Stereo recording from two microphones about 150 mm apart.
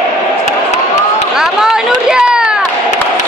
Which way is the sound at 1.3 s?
5° right (ahead or behind).